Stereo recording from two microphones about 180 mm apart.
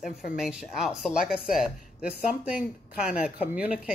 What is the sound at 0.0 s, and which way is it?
Speech, centre (ahead or behind).